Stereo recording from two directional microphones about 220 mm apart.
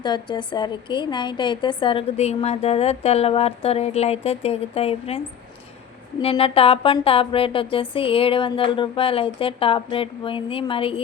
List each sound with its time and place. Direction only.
0.0 s a woman's voice: 20° left (ahead or behind)
6.2 s a woman's voice: 25° left (ahead or behind)